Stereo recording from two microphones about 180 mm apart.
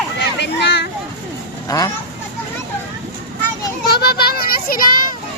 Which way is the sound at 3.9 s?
60° left (ahead or behind).